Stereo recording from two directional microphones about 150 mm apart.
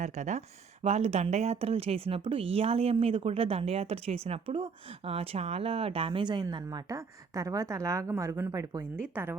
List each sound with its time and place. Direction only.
0.0 s speech: 50° right (ahead or behind); by 8.9 s 20° right (ahead or behind)